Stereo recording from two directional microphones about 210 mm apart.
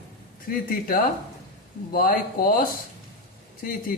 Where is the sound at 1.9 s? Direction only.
45° left (ahead or behind).